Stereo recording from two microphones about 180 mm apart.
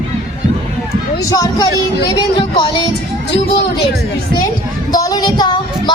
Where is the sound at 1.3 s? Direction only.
20° left (ahead or behind).